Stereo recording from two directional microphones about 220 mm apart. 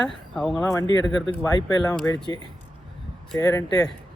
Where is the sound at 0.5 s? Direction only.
15° left (ahead or behind).